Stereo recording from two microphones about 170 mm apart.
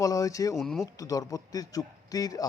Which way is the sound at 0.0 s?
20° left (ahead or behind).